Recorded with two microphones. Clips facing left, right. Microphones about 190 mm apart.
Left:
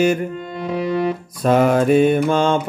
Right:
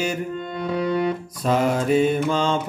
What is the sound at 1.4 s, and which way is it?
Mantra, 60° left (ahead or behind).